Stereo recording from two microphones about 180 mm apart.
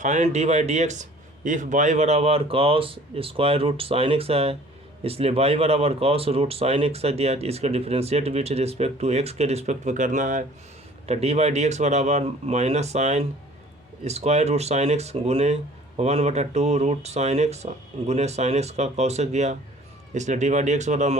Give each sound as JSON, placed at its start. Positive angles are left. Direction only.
{"t": 0.0, "sound": "speech", "side_deg": -40}